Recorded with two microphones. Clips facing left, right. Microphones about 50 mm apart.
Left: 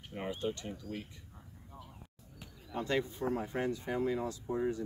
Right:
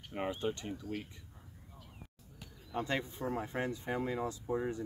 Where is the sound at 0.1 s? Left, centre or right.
Centre.